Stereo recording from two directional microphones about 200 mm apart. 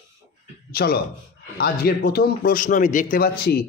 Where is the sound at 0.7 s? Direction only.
50° left (ahead or behind).